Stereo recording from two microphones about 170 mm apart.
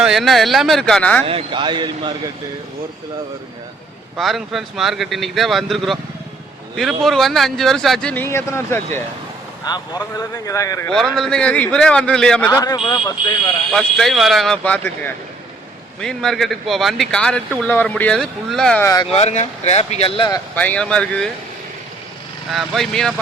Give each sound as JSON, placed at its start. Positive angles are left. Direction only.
{"t": 0.0, "sound": "speech", "side_deg": 0}
{"t": 1.2, "sound": "speech", "side_deg": -35}
{"t": 4.2, "sound": "speech", "side_deg": 0}
{"t": 10.8, "sound": "speech", "side_deg": 5}
{"t": 12.5, "sound": "speech", "side_deg": 20}
{"t": 13.7, "sound": "speech", "side_deg": 0}
{"t": 18.8, "sound": "speech", "side_deg": 20}
{"t": 19.1, "sound": "speech", "side_deg": 40}
{"t": 20.6, "sound": "speech", "side_deg": 5}
{"t": 22.5, "sound": "speech", "side_deg": 0}